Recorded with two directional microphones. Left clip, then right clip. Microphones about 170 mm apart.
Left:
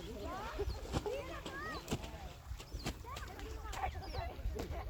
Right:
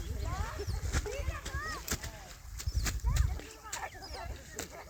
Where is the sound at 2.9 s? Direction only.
20° right (ahead or behind).